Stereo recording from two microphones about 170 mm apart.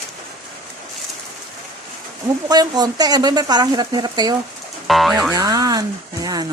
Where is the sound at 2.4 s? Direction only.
25° right (ahead or behind).